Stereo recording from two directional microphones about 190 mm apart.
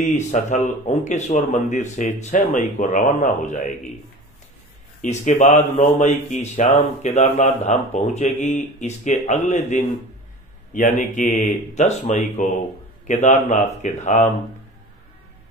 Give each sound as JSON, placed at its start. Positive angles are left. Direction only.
{"t": 0.0, "sound": "speech", "side_deg": 35}
{"t": 5.2, "sound": "speech", "side_deg": 40}